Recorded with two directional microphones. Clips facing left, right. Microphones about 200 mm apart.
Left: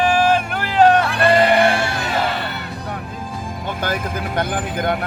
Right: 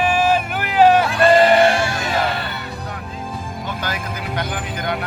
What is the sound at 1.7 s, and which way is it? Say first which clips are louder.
Music: right 1 dB; 60° left (ahead or behind).